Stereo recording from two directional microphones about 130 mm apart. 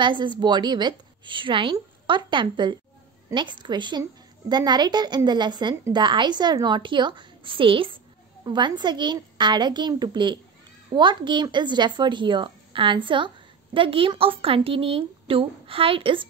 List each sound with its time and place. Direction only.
0.0 s a woman's voice: 35° right (ahead or behind)